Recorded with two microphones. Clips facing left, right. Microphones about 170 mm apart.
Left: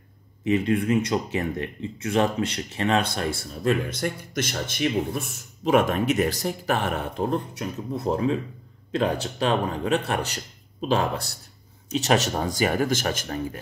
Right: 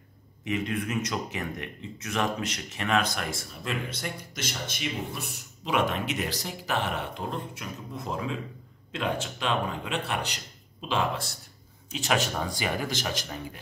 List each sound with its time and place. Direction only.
0.5 s speech: 30° left (ahead or behind)
4.0 s a man's voice: 55° left (ahead or behind)